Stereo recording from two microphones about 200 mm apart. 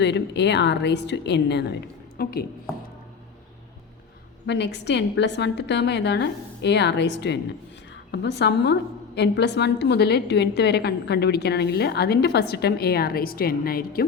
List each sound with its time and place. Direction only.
0.0 s a woman's voice: 60° left (ahead or behind)
4.4 s a woman's voice: 60° left (ahead or behind)